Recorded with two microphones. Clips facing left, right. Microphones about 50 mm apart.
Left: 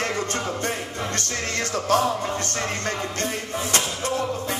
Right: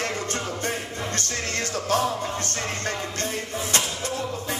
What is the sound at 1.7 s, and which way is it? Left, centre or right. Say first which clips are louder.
Music: left 3 dB; left.